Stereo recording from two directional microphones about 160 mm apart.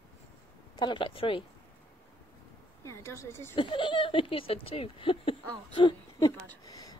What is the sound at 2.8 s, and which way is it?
Speech, 20° left (ahead or behind).